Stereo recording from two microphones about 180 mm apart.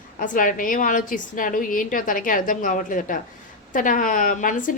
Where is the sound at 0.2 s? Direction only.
50° left (ahead or behind).